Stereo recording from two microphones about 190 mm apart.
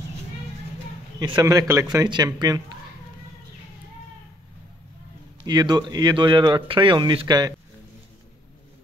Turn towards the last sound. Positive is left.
turn(degrees=-20)  # may be behind; listen again after turning